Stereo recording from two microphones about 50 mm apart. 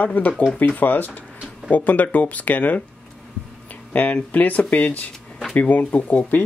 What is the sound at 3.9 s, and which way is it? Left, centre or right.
Speech, left.